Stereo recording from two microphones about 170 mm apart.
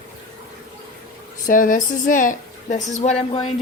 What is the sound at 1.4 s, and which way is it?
A woman's voice, 50° left (ahead or behind).